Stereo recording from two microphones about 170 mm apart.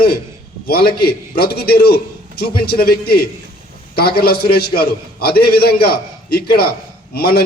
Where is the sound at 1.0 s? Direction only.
65° left (ahead or behind).